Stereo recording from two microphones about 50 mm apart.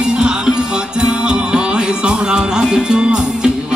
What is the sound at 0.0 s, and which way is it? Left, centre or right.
Music, centre.